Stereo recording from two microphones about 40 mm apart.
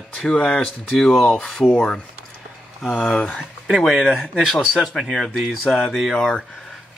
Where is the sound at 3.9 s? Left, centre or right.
Centre.